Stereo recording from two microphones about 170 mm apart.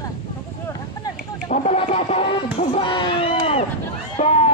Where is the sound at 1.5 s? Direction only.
40° left (ahead or behind).